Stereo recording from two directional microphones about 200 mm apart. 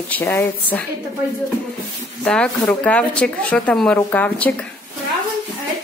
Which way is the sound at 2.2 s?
5° left (ahead or behind).